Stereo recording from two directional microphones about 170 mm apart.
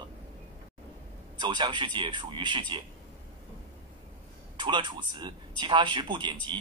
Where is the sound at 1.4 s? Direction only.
25° right (ahead or behind).